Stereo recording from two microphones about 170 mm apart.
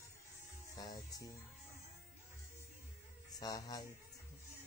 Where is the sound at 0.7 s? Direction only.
20° left (ahead or behind).